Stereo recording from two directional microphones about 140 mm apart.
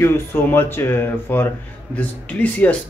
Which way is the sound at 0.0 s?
15° left (ahead or behind).